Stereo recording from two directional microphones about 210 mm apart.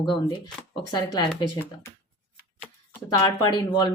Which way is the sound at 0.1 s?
20° left (ahead or behind).